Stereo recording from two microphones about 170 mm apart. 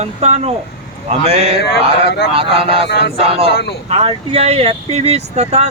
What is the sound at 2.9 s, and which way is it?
Speech, 90° left.